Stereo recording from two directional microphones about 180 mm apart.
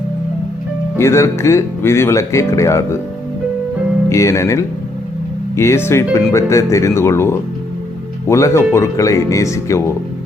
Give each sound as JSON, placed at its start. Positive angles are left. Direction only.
{"t": 0.9, "sound": "speech", "side_deg": 15}
{"t": 4.1, "sound": "speech", "side_deg": 15}